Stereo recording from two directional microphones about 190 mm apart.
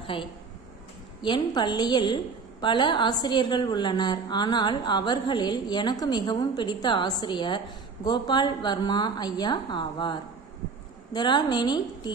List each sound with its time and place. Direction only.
0.0 s a woman's voice: 25° left (ahead or behind)